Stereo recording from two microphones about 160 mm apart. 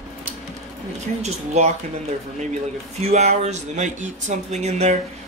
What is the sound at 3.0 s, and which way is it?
Speech, 45° right (ahead or behind).